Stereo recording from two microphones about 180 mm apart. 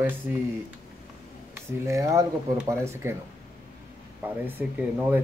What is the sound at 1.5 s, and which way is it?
Speech, 15° right (ahead or behind).